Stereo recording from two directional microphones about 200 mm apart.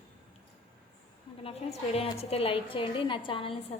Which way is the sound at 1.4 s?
30° left (ahead or behind).